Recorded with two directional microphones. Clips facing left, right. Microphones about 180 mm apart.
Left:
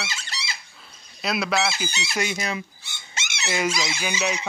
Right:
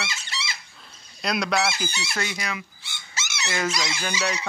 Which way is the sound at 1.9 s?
20° left (ahead or behind).